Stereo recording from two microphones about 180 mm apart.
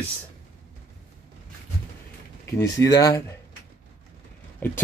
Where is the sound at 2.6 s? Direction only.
20° left (ahead or behind).